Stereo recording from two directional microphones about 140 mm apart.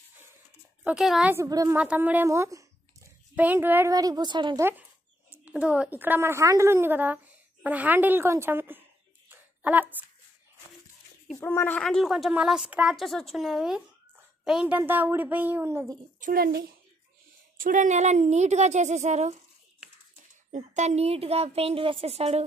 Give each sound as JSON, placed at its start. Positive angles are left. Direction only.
{"t": 0.8, "sound": "a woman's voice", "side_deg": 0}
{"t": 1.3, "sound": "a woman's voice", "side_deg": -25}
{"t": 1.8, "sound": "speech", "side_deg": -10}
{"t": 3.9, "sound": "a woman's voice", "side_deg": -25}
{"t": 4.6, "sound": "a woman's voice", "side_deg": -15}
{"t": 9.6, "sound": "a sound", "side_deg": -10}
{"t": 11.3, "sound": "a woman's voice", "side_deg": 15}
{"t": 16.2, "sound": "speech", "side_deg": -90}
{"t": 17.6, "sound": "speech", "side_deg": -70}
{"t": 20.5, "sound": "a woman's voice", "side_deg": -55}